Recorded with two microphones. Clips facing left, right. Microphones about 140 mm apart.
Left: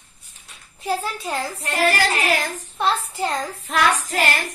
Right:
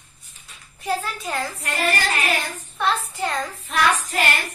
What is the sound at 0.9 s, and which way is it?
A child's voice, 25° left (ahead or behind).